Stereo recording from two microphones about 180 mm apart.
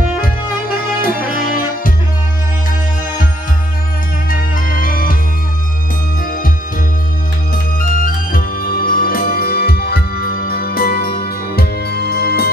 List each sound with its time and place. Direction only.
1.0 s music: 50° left (ahead or behind)
4.3 s music: 50° left (ahead or behind)
6.2 s music: 50° left (ahead or behind)
7.9 s music: 50° left (ahead or behind)